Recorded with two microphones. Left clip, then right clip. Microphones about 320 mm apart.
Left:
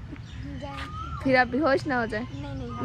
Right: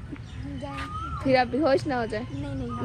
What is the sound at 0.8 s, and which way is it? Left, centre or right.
Speech, centre.